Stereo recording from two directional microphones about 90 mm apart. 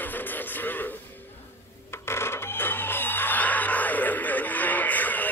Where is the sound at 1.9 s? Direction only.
30° left (ahead or behind).